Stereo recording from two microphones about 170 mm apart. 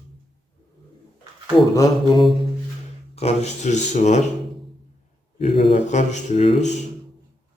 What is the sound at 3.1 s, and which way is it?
Speech, 35° left (ahead or behind).